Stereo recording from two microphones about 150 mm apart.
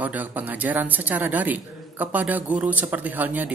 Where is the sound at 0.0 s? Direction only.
10° right (ahead or behind).